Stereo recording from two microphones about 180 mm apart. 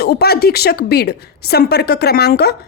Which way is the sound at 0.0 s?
60° left (ahead or behind).